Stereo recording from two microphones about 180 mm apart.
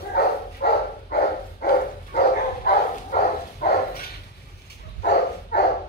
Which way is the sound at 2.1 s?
55° left (ahead or behind).